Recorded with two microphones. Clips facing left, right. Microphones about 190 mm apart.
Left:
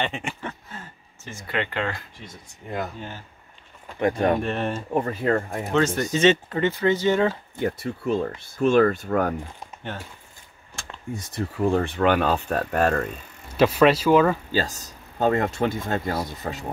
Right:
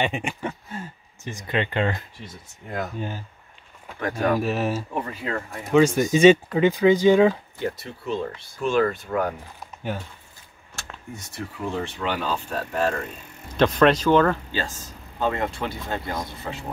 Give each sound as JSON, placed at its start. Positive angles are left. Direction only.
{"t": 0.0, "sound": "speech", "side_deg": -15}
{"t": 4.0, "sound": "speech", "side_deg": 25}
{"t": 4.4, "sound": "speech", "side_deg": -5}
{"t": 5.0, "sound": "speech", "side_deg": 45}
{"t": 5.7, "sound": "speech", "side_deg": -10}
{"t": 7.5, "sound": "speech", "side_deg": 50}
{"t": 11.7, "sound": "speech", "side_deg": 55}
{"t": 13.5, "sound": "speech", "side_deg": 5}
{"t": 14.5, "sound": "speech", "side_deg": 40}